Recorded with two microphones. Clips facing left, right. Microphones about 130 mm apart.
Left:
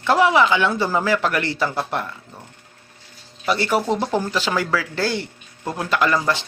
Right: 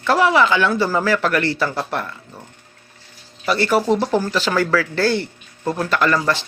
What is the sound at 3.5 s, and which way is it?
Speech, 20° left (ahead or behind).